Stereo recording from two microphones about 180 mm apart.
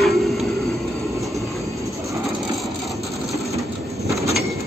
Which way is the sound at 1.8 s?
15° right (ahead or behind).